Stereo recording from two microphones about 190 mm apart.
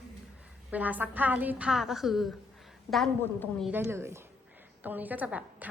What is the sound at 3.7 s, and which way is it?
A woman's voice, 15° right (ahead or behind).